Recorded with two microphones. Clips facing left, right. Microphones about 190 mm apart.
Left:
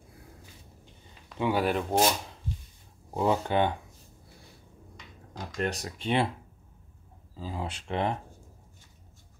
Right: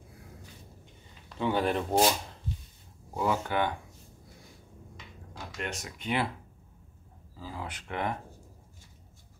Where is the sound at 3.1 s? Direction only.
25° left (ahead or behind).